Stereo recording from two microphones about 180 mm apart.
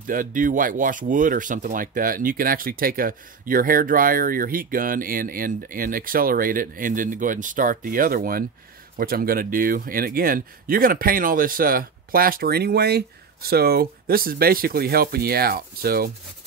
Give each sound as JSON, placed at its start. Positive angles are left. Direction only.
{"t": 0.0, "sound": "speech", "side_deg": -50}